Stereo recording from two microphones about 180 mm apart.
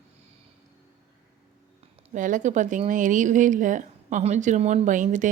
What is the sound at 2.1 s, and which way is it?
Speech, 45° right (ahead or behind).